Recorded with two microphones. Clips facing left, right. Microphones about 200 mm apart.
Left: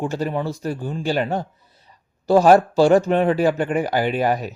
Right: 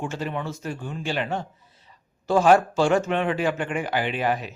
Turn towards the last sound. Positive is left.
turn(degrees=40)  # may be behind; listen again after turning